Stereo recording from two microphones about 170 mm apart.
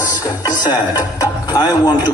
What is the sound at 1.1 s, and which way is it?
Music, 20° left (ahead or behind).